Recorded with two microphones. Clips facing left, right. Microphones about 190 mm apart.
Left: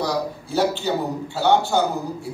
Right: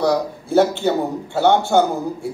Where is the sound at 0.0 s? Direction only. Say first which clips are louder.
Right 5 dB; 55° right (ahead or behind).